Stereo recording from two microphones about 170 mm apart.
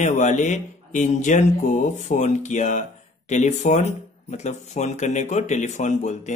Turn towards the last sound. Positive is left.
turn(degrees=45)  # may be behind; listen again after turning